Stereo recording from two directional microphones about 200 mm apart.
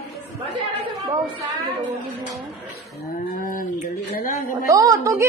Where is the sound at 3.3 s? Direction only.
45° left (ahead or behind).